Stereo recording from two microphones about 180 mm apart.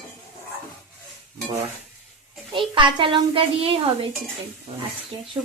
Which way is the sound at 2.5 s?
30° right (ahead or behind).